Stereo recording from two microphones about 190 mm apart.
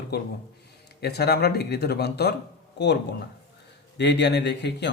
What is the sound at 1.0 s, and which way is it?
Speech, 60° left (ahead or behind).